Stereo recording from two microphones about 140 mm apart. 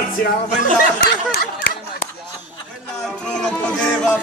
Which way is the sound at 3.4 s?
5° left (ahead or behind).